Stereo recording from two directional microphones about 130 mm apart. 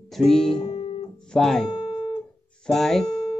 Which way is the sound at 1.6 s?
35° left (ahead or behind).